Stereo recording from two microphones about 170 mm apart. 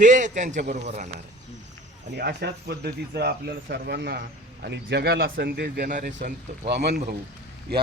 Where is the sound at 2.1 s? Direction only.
75° right (ahead or behind); by 6.3 s 50° right (ahead or behind).